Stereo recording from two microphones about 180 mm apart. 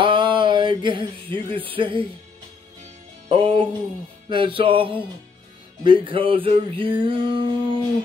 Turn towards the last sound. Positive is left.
turn(degrees=-30)  # may be behind; listen again after turning